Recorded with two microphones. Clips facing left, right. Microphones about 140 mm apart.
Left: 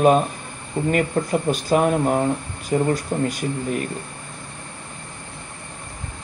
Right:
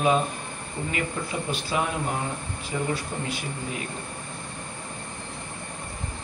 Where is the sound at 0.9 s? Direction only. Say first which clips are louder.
Left 10 dB; 45° left (ahead or behind).